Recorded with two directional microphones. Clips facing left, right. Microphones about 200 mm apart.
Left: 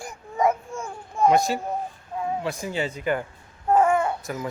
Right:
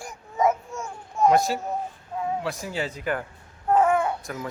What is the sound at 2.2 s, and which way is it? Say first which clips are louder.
Speech: left 1 dB; centre (ahead or behind).